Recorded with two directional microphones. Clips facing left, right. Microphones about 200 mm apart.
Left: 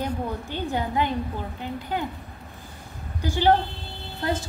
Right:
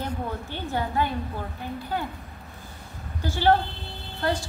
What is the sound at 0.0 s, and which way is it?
A woman's voice, 15° left (ahead or behind).